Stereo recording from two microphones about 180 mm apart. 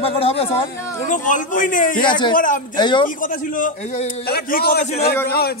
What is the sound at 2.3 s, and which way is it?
Speech, 50° left (ahead or behind).